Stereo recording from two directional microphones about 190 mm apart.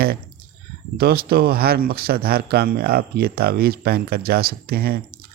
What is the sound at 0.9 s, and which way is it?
Speech, 55° right (ahead or behind).